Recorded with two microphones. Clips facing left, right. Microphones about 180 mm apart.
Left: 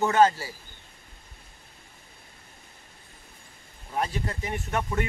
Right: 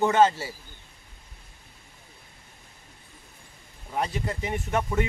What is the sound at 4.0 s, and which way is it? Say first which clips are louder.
Speech: right 1 dB; 15° right (ahead or behind).